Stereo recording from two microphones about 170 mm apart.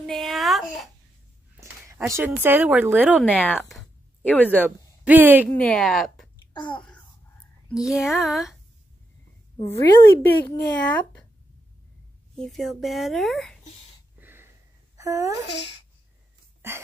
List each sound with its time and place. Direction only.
0.0 s a sound: centre (ahead or behind)
1.6 s a sound: 15° right (ahead or behind)
2.4 s a woman's voice: 10° right (ahead or behind); by 4.6 s 10° left (ahead or behind)
4.6 s speech: 10° right (ahead or behind)
5.6 s speech: 5° left (ahead or behind)
6.5 s a child's voice: 30° left (ahead or behind)
7.7 s speech: centre (ahead or behind)
9.8 s a woman's voice: 10° left (ahead or behind)
12.4 s speech: centre (ahead or behind)
14.2 s wheeze: 15° right (ahead or behind)
15.0 s speech: 20° right (ahead or behind)
16.6 s a sound: 15° right (ahead or behind)